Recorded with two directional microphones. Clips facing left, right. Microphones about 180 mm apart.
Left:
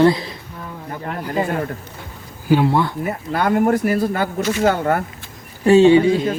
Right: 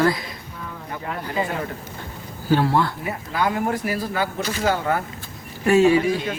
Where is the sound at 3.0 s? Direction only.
55° left (ahead or behind).